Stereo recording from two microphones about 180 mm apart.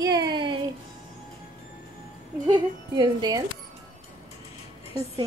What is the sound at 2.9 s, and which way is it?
Speech, 20° right (ahead or behind).